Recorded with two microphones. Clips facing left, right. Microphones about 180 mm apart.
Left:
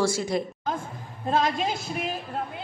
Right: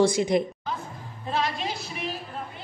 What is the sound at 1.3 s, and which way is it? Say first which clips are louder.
Speech: left 4 dB; 45° left (ahead or behind).